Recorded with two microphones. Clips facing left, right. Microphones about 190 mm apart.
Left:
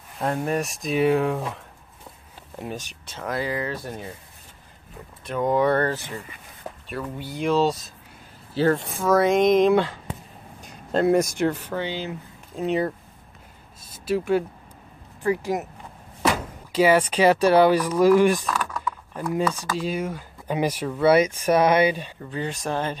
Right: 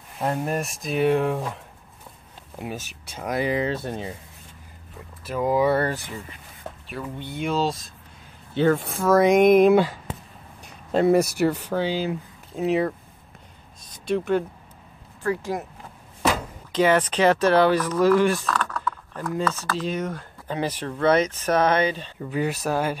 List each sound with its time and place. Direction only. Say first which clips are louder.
0.2 s speech: left 1 dB; 5° right (ahead or behind); by 4.1 s 25° right (ahead or behind)
5.2 s speech: even; 5° right (ahead or behind)
6.9 s speech: left 1 dB; centre (ahead or behind)
9.1 s speech: right 2 dB; 10° right (ahead or behind)
13.8 s a sound: even; 5° left (ahead or behind)
15.2 s speech: left 2 dB; 15° left (ahead or behind)
16.7 s speech: left 1 dB; 10° left (ahead or behind)
22.3 s speech: right 3 dB; 10° right (ahead or behind)